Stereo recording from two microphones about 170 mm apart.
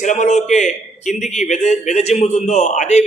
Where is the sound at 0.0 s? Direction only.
45° left (ahead or behind).